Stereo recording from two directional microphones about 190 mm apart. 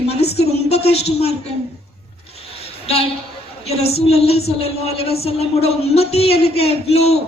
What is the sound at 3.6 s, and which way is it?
A woman's voice, 35° left (ahead or behind).